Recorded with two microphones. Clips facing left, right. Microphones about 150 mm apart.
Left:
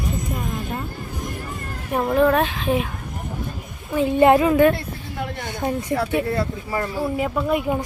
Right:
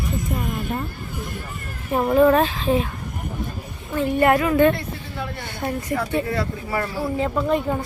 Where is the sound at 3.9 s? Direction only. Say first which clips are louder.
Left 3 dB; 20° left (ahead or behind).